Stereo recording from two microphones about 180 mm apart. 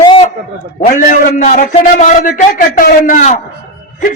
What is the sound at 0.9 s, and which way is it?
Speech, 50° left (ahead or behind).